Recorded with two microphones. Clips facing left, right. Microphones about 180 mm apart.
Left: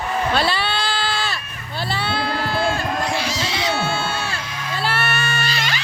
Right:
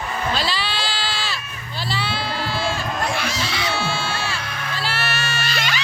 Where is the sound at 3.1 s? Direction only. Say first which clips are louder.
Left 1 dB; 55° right (ahead or behind).